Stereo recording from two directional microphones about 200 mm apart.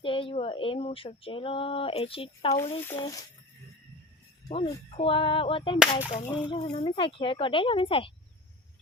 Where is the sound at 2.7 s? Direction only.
15° left (ahead or behind).